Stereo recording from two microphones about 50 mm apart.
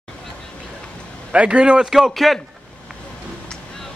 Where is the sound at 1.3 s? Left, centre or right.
Right.